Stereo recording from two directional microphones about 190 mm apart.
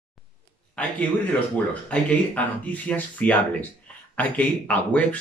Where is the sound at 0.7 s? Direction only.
5° left (ahead or behind).